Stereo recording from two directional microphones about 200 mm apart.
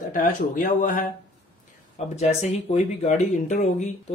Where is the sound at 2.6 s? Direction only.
35° left (ahead or behind).